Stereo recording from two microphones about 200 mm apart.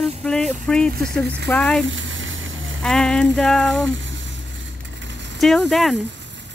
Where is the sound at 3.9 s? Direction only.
70° right (ahead or behind).